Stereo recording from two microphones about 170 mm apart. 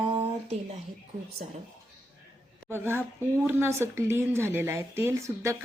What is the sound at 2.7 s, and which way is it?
Speech, 15° right (ahead or behind).